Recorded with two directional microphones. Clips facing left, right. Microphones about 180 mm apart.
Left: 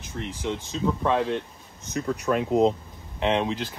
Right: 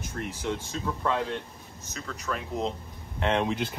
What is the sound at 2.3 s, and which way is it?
Speech, 65° left (ahead or behind).